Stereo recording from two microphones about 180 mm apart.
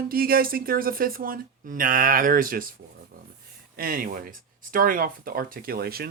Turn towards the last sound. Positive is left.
turn(degrees=-60)  # may be behind; listen again after turning